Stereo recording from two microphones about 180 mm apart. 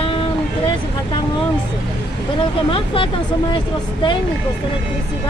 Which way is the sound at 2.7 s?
30° left (ahead or behind).